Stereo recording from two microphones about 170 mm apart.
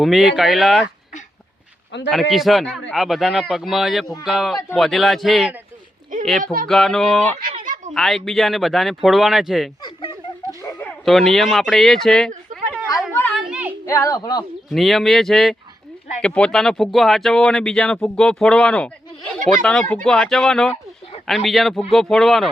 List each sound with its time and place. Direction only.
0.0 s speech: centre (ahead or behind)
2.0 s speech: centre (ahead or behind)
6.4 s speech: 55° right (ahead or behind)
6.7 s speech: centre (ahead or behind)
7.6 s a sound: 50° right (ahead or behind)
7.9 s speech: centre (ahead or behind)
10.6 s a sound: 15° left (ahead or behind)
11.0 s speech: centre (ahead or behind)
13.5 s female singing: 10° right (ahead or behind)
13.8 s speech: 20° left (ahead or behind)
14.7 s speech: centre (ahead or behind)